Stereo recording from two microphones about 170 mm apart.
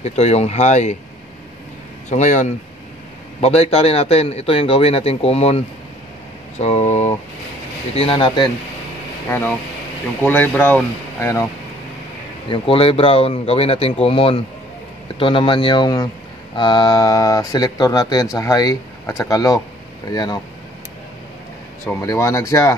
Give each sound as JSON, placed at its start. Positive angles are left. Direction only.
{"t": 0.0, "sound": "a man's voice", "side_deg": 40}
{"t": 2.0, "sound": "a man's voice", "side_deg": 45}
{"t": 6.6, "sound": "a man's voice", "side_deg": 40}
{"t": 10.2, "sound": "speech", "side_deg": 10}
{"t": 12.4, "sound": "a man's voice", "side_deg": 30}
{"t": 22.0, "sound": "speech", "side_deg": 20}